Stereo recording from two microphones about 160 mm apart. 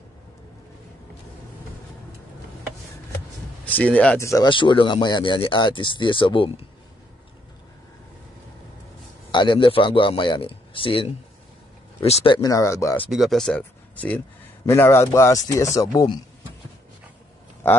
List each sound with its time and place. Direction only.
3.6 s speech: 10° left (ahead or behind)
4.2 s speech: 20° left (ahead or behind)
4.5 s speech: 30° left (ahead or behind)
9.3 s speech: 30° left (ahead or behind)
12.4 s speech: 20° left (ahead or behind)
13.1 s a man's voice: centre (ahead or behind); by 16.2 s 20° left (ahead or behind)